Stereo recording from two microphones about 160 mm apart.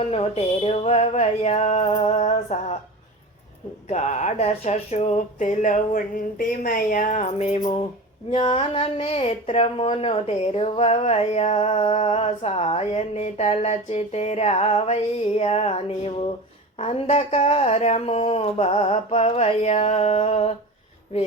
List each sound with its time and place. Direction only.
0.1 s speech: 40° left (ahead or behind)
3.8 s speech: 45° left (ahead or behind)
7.6 s speech: 30° left (ahead or behind)